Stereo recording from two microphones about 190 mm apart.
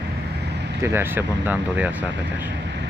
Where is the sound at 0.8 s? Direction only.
10° right (ahead or behind).